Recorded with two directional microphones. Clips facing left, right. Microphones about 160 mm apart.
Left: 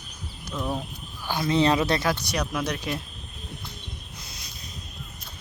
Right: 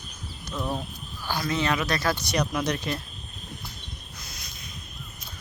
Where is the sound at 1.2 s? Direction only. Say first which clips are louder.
Left 5 dB; 25° left (ahead or behind).